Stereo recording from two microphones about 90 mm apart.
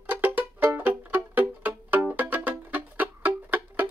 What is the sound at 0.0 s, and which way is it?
Music, 20° right (ahead or behind).